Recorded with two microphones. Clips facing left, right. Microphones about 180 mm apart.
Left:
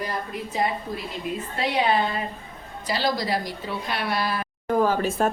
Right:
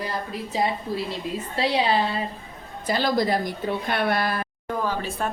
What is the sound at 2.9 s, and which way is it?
A woman's voice, 50° right (ahead or behind).